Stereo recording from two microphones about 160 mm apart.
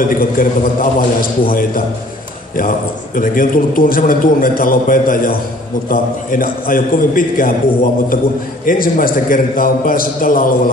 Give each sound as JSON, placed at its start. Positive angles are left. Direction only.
{"t": 0.1, "sound": "a man's voice", "side_deg": 60}
{"t": 3.2, "sound": "a man's voice", "side_deg": 60}
{"t": 8.6, "sound": "a man's voice", "side_deg": 60}